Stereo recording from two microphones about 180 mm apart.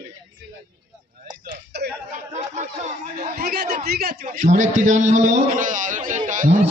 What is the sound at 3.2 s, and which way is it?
A man's voice, 55° right (ahead or behind).